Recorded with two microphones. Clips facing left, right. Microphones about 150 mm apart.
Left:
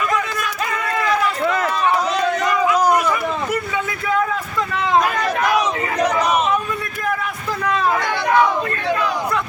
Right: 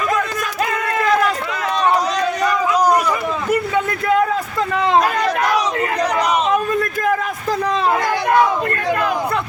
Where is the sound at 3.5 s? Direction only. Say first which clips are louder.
Right 5 dB; 55° right (ahead or behind).